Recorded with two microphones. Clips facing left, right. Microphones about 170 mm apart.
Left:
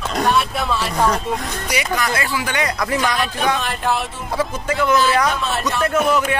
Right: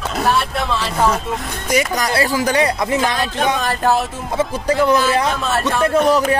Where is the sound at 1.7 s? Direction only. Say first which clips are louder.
Right 5 dB; 40° right (ahead or behind).